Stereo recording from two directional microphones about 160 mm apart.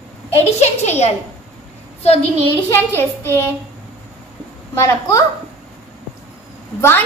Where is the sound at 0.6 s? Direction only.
45° left (ahead or behind).